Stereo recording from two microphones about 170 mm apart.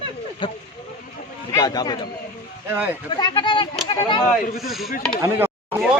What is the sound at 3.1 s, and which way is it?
Speech, 30° left (ahead or behind).